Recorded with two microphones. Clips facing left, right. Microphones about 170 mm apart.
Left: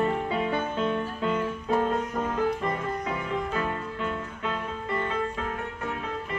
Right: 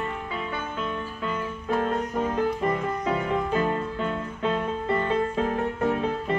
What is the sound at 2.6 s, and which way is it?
Music, 30° right (ahead or behind).